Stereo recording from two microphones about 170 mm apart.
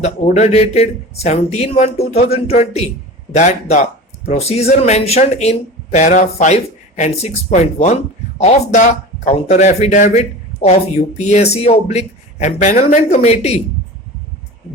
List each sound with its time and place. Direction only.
0.0 s speech: 40° left (ahead or behind)